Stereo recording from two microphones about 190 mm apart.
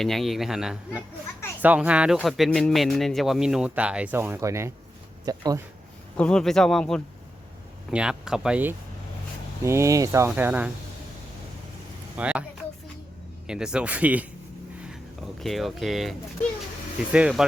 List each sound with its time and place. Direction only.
0.0 s speech: centre (ahead or behind); by 5.6 s 20° right (ahead or behind)
6.1 s speech: 5° left (ahead or behind)
12.1 s speech: 5° right (ahead or behind)
13.5 s speech: 5° right (ahead or behind)
15.4 s speech: centre (ahead or behind)